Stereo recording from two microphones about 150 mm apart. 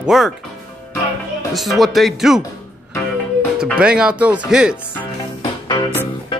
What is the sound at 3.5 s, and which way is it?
Speech, 5° right (ahead or behind).